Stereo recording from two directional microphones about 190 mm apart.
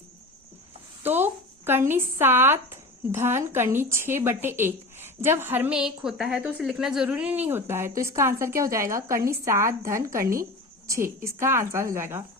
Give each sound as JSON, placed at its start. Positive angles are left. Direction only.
{"t": 1.0, "sound": "speech", "side_deg": -10}